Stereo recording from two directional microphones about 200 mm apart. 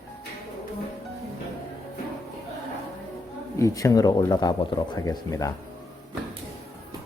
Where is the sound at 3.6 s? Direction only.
15° left (ahead or behind).